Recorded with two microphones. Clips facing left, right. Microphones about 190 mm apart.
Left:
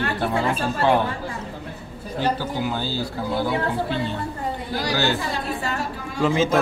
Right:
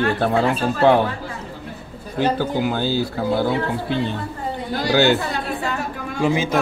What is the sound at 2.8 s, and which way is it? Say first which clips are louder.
Speech: right 6 dB; 55° right (ahead or behind).